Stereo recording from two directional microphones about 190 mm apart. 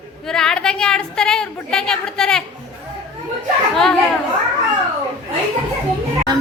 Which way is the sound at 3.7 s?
Centre (ahead or behind).